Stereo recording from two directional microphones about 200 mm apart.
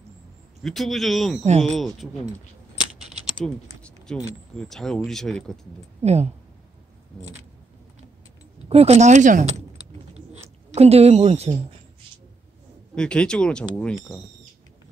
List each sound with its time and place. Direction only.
0.6 s speech: centre (ahead or behind)
3.0 s typing: centre (ahead or behind)
4.6 s speech: centre (ahead or behind)
6.0 s speech: 30° right (ahead or behind)
8.6 s speech: 30° right (ahead or behind)
10.7 s speech: 30° right (ahead or behind)
12.9 s speech: 5° left (ahead or behind)